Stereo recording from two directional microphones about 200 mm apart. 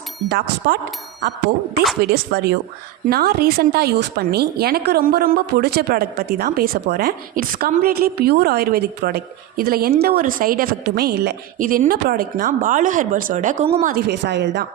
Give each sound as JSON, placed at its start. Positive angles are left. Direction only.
{"t": 0.3, "sound": "a woman's voice", "side_deg": -55}
{"t": 2.0, "sound": "a woman's voice", "side_deg": -55}
{"t": 13.9, "sound": "a woman's voice", "side_deg": -60}